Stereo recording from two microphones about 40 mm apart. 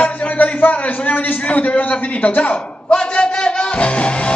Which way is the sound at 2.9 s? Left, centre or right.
Left.